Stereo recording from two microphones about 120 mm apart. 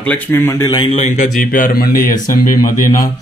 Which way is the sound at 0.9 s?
85° left.